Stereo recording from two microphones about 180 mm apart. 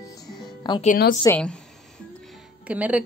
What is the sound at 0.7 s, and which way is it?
Speech, 25° left (ahead or behind).